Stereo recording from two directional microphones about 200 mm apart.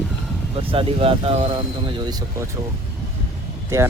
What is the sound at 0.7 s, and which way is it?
Speech, 25° right (ahead or behind).